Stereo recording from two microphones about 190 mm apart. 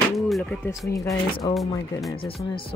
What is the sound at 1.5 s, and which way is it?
Speech, 20° left (ahead or behind).